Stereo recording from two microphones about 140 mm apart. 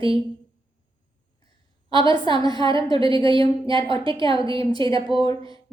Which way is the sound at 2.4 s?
30° left (ahead or behind).